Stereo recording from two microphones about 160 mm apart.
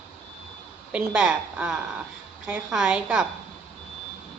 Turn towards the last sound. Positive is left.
turn(degrees=-5)  # may be behind; listen again after turning